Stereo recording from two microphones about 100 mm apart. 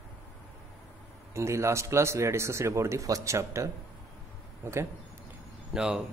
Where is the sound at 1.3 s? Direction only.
30° right (ahead or behind).